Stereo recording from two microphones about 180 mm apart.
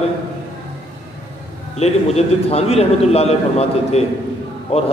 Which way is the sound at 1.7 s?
35° left (ahead or behind).